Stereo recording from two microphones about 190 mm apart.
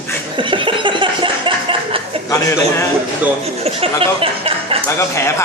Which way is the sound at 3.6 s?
30° right (ahead or behind).